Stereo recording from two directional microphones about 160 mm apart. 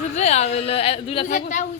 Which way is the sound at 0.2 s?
45° left (ahead or behind).